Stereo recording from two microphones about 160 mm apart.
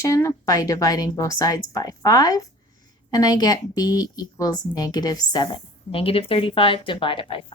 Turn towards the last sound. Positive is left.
turn(degrees=35)  # may be behind; listen again after turning